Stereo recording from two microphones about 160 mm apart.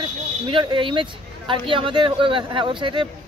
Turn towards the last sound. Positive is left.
turn(degrees=-30)  # may be behind; listen again after turning